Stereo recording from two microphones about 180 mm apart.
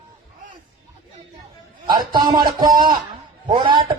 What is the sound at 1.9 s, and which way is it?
A man's voice, 25° right (ahead or behind).